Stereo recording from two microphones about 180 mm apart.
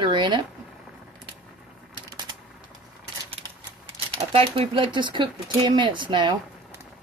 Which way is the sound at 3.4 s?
35° right (ahead or behind).